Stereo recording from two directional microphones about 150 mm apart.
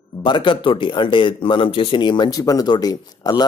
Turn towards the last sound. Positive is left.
turn(degrees=25)  # may be behind; listen again after turning